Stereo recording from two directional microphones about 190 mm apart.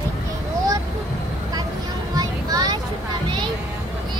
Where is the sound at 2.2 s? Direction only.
20° right (ahead or behind).